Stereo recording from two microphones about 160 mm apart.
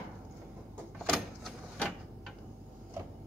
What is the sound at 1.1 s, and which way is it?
Vehicle, centre (ahead or behind).